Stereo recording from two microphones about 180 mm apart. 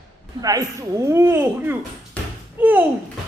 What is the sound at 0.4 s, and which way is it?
Speech, 20° right (ahead or behind).